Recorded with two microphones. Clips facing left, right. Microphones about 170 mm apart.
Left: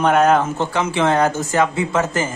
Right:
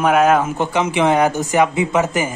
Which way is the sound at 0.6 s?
15° right (ahead or behind).